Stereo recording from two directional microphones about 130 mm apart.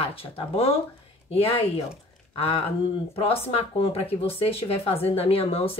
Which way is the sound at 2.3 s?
45° left (ahead or behind).